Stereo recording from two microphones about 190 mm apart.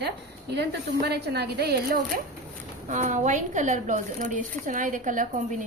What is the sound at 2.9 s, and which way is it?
A woman's voice, 40° right (ahead or behind).